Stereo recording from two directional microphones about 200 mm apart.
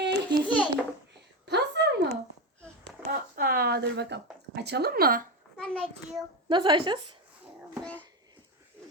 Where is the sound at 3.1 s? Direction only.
45° right (ahead or behind).